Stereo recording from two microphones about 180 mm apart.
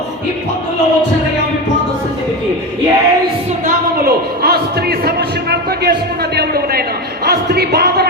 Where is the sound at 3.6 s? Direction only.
55° right (ahead or behind).